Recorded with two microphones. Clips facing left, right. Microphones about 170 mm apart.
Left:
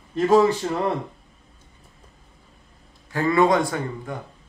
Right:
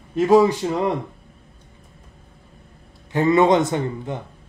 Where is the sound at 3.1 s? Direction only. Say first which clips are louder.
Right 3 dB; 20° right (ahead or behind).